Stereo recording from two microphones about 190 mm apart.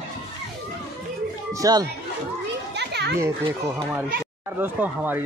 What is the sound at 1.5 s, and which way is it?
Speech, 20° right (ahead or behind).